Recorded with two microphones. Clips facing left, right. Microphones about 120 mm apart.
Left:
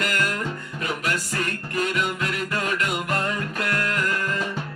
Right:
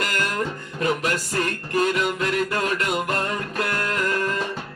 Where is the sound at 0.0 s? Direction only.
40° right (ahead or behind).